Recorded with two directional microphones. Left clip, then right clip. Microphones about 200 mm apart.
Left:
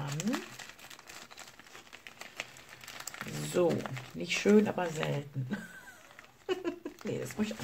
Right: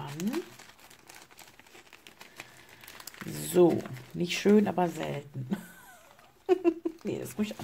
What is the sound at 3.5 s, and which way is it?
Speech, 50° right (ahead or behind).